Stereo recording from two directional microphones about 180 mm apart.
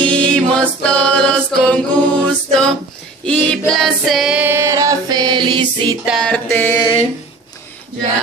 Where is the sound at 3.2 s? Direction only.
5° left (ahead or behind); by 6.0 s 25° right (ahead or behind).